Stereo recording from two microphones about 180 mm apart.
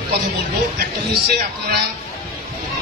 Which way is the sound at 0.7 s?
60° right (ahead or behind).